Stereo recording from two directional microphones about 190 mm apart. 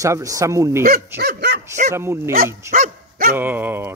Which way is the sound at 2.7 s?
45° right (ahead or behind).